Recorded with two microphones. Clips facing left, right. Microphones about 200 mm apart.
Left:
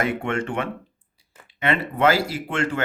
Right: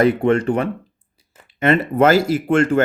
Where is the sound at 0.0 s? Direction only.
35° right (ahead or behind).